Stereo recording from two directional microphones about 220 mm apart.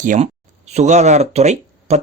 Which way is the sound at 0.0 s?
35° right (ahead or behind).